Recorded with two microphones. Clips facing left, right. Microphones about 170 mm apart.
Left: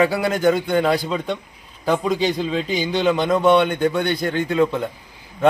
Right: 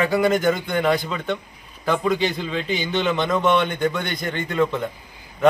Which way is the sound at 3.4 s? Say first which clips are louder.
Left 4 dB; 30° left (ahead or behind).